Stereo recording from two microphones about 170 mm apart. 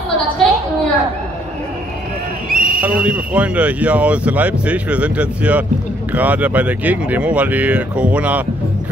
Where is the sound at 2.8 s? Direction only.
10° right (ahead or behind).